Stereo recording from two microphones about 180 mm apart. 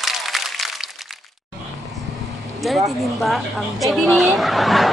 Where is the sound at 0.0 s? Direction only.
Centre (ahead or behind).